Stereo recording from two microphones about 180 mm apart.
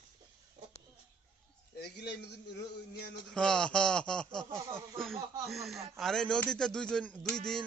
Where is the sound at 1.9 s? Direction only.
65° left (ahead or behind).